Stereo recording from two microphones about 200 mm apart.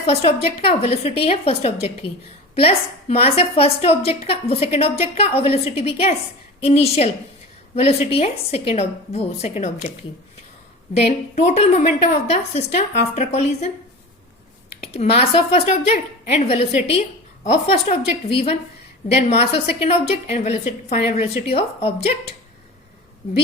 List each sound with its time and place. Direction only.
0.0 s a woman's voice: 30° left (ahead or behind)
11.3 s a woman's voice: 30° left (ahead or behind)
14.7 s a woman's voice: 30° left (ahead or behind)